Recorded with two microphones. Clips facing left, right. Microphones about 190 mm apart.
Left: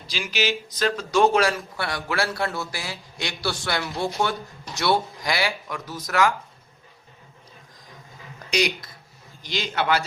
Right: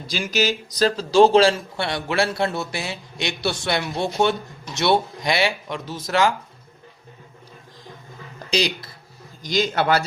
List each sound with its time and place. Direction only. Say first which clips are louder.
0.1 s speech: right 4 dB; 45° right (ahead or behind); by 6.3 s 25° right (ahead or behind)
8.4 s speech: right 1 dB; 30° right (ahead or behind)
9.4 s a man's voice: right 6 dB; 45° right (ahead or behind)